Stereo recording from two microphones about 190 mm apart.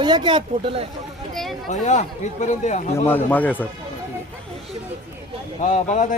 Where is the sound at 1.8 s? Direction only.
40° left (ahead or behind).